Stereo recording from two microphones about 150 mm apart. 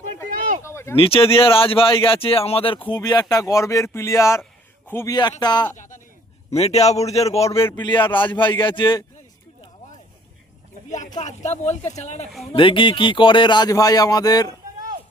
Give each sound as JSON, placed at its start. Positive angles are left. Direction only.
{"t": 0.6, "sound": "a sound", "side_deg": 15}
{"t": 0.9, "sound": "a man's voice", "side_deg": 40}
{"t": 5.4, "sound": "speech", "side_deg": 30}
{"t": 5.7, "sound": "a sound", "side_deg": 55}
{"t": 6.5, "sound": "speech", "side_deg": 45}
{"t": 7.8, "sound": "speech", "side_deg": 30}
{"t": 10.8, "sound": "a sound", "side_deg": 55}
{"t": 11.2, "sound": "speech", "side_deg": 50}
{"t": 12.5, "sound": "speech", "side_deg": 35}